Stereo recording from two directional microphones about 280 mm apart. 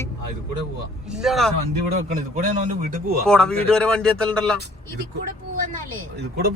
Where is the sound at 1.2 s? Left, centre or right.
Centre.